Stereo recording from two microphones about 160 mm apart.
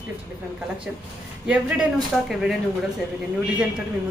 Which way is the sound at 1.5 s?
5° right (ahead or behind).